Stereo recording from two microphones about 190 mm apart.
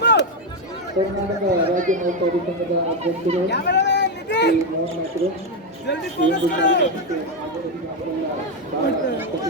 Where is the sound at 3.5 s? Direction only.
65° left (ahead or behind).